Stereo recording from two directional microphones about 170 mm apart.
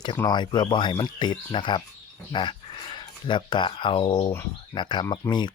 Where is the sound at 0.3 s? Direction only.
25° left (ahead or behind).